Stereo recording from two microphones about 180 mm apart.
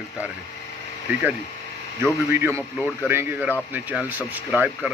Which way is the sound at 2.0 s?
15° right (ahead or behind).